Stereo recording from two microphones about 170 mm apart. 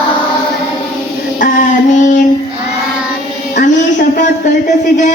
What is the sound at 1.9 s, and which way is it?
Child singing, 45° left (ahead or behind).